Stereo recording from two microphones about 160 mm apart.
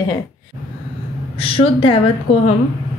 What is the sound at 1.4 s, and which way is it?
Speech, 35° left (ahead or behind).